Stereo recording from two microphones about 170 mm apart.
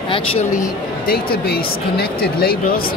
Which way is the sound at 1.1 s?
65° left (ahead or behind).